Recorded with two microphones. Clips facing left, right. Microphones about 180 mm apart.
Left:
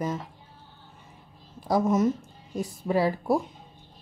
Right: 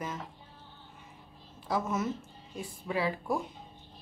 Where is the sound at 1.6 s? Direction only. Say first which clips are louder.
Left 9 dB; 40° left (ahead or behind).